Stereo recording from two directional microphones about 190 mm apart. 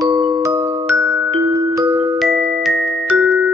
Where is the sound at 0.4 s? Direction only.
20° right (ahead or behind).